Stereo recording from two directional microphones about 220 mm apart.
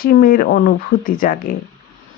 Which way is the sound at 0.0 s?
40° left (ahead or behind).